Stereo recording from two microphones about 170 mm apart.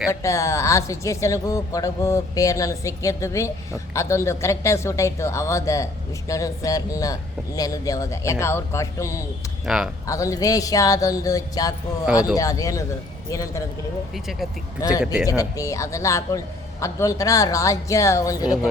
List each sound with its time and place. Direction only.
0.1 s a woman's voice: 15° left (ahead or behind)
9.6 s speech: 5° right (ahead or behind)
10.1 s speech: 20° left (ahead or behind)
14.1 s speech: centre (ahead or behind)
14.8 s speech: 20° left (ahead or behind)
15.0 s speech: 5° right (ahead or behind)
15.3 s speech: 20° left (ahead or behind)
18.4 s speech: 5° right (ahead or behind)